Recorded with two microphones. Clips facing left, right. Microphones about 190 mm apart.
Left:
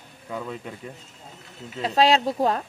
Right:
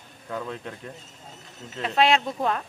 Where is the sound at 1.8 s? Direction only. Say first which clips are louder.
Left 2 dB; 35° left (ahead or behind).